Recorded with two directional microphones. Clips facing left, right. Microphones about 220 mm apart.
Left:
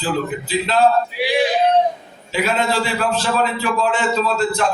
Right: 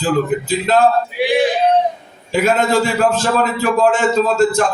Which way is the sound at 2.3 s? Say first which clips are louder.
Right 5 dB; 45° right (ahead or behind).